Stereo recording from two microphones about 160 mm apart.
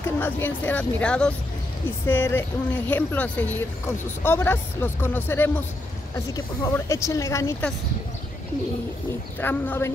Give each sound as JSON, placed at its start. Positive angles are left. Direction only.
{"t": 0.0, "sound": "speech", "side_deg": 15}
{"t": 9.4, "sound": "speech", "side_deg": 15}